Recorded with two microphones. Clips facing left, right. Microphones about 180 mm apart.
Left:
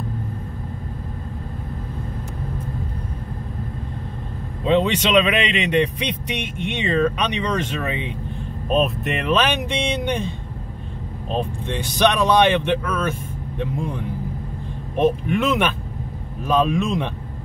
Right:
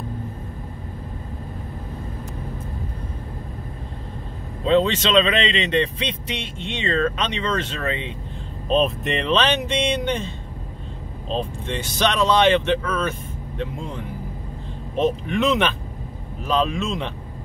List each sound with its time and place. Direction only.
4.6 s speech: 15° left (ahead or behind)
8.6 s speech: 5° left (ahead or behind)